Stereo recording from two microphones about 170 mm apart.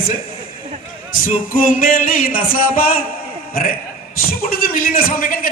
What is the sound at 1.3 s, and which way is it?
A man's voice, 55° left (ahead or behind).